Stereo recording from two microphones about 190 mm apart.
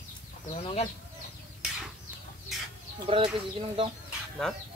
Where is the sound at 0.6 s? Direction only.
30° left (ahead or behind).